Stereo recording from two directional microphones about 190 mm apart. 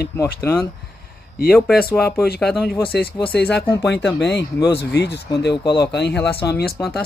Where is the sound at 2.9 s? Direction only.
55° left (ahead or behind).